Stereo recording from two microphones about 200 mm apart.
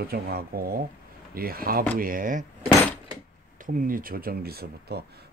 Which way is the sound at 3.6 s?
45° right (ahead or behind).